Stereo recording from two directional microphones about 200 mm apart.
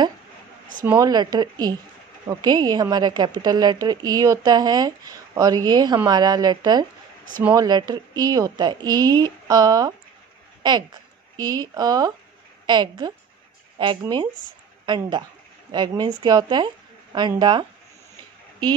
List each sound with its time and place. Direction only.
0.8 s speech: 15° right (ahead or behind)